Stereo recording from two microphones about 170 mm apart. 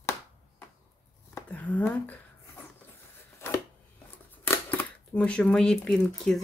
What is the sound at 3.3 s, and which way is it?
Chopping, 15° left (ahead or behind).